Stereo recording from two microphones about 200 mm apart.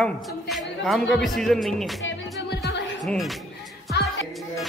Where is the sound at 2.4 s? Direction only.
60° left (ahead or behind).